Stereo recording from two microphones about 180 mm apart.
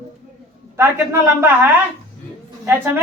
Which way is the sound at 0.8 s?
10° right (ahead or behind).